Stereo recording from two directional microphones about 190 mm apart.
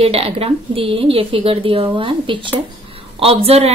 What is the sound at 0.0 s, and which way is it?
A woman's voice, 30° right (ahead or behind).